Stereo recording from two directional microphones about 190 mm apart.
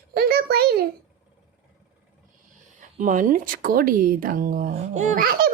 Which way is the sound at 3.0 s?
45° right (ahead or behind).